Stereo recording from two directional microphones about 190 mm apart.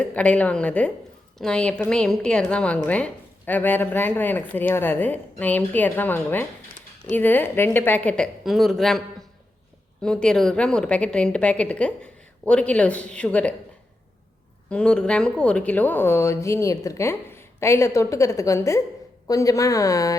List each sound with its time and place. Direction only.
0.0 s a woman's voice: 5° left (ahead or behind)
14.7 s speech: 5° left (ahead or behind)